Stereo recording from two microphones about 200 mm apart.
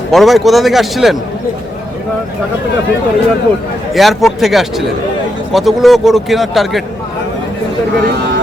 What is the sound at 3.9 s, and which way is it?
A man's voice, centre (ahead or behind).